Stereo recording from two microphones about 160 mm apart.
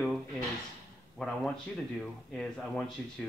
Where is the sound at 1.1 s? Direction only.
Centre (ahead or behind).